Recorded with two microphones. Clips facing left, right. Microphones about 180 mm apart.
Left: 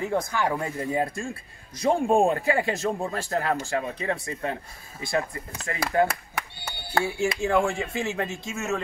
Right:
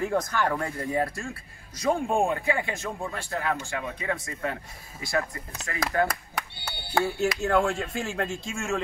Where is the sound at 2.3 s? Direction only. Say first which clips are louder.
Left 3 dB; 40° left (ahead or behind).